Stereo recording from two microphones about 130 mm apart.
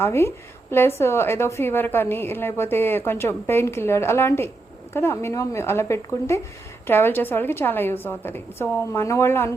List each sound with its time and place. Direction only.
0.0 s a woman's voice: 20° left (ahead or behind)